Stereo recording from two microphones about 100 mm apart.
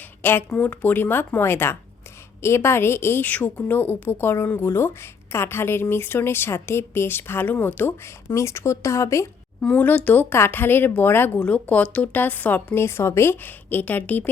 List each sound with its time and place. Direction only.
0.2 s a woman's voice: 20° left (ahead or behind)
9.6 s a woman's voice: 15° left (ahead or behind)